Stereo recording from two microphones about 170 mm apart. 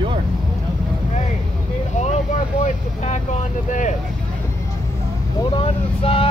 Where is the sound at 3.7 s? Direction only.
45° left (ahead or behind).